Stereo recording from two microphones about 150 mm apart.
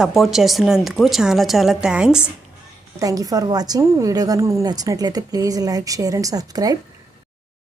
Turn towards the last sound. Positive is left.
turn(degrees=-25)  # may be behind; listen again after turning